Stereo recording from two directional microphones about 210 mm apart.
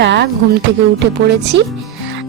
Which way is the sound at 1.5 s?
60° right (ahead or behind).